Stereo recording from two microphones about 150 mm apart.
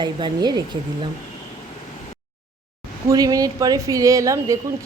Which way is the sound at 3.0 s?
25° right (ahead or behind).